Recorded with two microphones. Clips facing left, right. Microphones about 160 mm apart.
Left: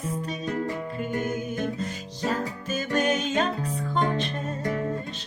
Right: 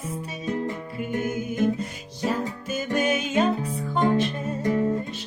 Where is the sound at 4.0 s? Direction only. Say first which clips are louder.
Right 5 dB; 20° right (ahead or behind).